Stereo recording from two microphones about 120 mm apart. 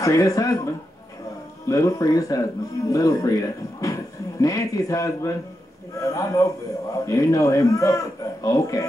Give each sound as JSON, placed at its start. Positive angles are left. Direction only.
{"t": 0.0, "sound": "a man's voice", "side_deg": 25}
{"t": 1.7, "sound": "a man's voice", "side_deg": 30}